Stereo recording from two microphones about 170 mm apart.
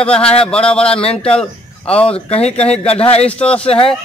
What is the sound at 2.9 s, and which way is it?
A man's voice, 35° left (ahead or behind).